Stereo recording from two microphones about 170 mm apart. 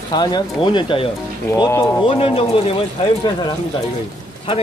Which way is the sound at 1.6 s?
15° left (ahead or behind).